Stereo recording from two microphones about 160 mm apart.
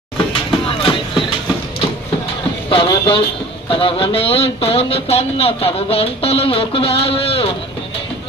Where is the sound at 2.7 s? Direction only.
35° left (ahead or behind).